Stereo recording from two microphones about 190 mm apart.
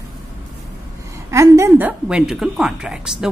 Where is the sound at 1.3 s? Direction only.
15° right (ahead or behind).